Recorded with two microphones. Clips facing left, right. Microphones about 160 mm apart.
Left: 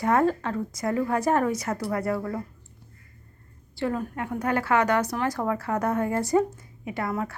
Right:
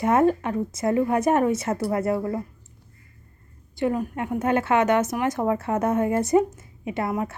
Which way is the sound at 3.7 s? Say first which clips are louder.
Right 4 dB; 15° right (ahead or behind).